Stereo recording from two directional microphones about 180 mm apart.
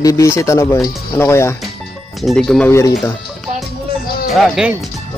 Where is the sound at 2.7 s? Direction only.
15° left (ahead or behind).